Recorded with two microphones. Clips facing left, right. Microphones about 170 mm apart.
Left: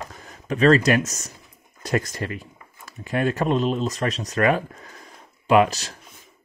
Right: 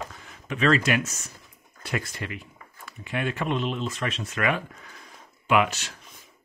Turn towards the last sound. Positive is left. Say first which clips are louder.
# left 5 dB
turn(degrees=40)  # may be behind; listen again after turning